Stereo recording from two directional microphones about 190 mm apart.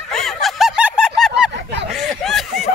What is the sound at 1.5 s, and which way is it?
Honk, 70° right (ahead or behind).